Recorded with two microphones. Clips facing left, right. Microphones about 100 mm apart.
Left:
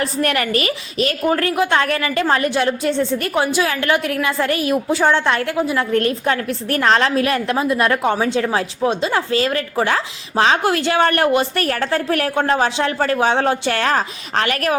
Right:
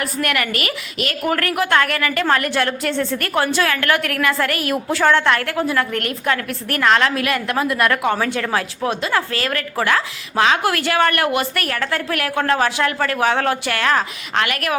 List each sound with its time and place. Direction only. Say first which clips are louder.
0.0 s a woman's voice: left 2 dB; 30° left (ahead or behind)